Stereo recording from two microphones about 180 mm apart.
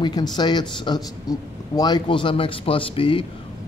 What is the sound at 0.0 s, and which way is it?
A man's voice, 25° left (ahead or behind).